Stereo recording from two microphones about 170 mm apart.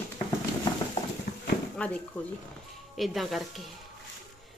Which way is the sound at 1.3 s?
65° left (ahead or behind).